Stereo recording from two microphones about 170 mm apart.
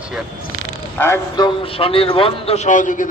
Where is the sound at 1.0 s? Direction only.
20° left (ahead or behind).